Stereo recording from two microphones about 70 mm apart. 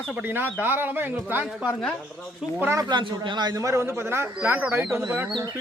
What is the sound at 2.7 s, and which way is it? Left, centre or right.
Speech, right.